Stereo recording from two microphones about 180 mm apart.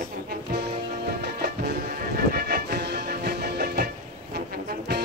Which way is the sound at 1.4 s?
60° right (ahead or behind).